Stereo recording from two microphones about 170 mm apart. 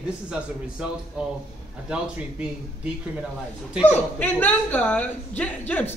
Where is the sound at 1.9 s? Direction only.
5° right (ahead or behind).